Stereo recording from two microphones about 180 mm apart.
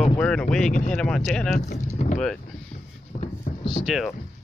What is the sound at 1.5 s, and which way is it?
Speech, 40° left (ahead or behind).